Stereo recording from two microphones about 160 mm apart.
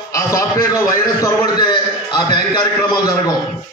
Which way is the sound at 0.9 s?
20° left (ahead or behind).